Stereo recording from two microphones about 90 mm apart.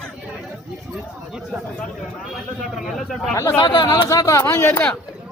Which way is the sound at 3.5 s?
55° left (ahead or behind).